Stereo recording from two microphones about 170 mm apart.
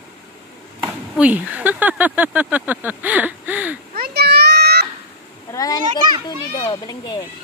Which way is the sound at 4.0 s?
70° right (ahead or behind).